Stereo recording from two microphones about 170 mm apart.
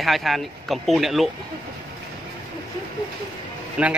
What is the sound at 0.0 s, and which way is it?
Speech, centre (ahead or behind).